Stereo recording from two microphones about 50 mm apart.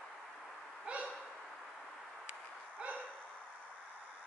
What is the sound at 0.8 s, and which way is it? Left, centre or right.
Owl, right.